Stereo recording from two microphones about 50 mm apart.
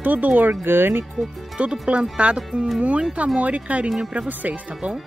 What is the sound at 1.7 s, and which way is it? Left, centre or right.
Speech, right.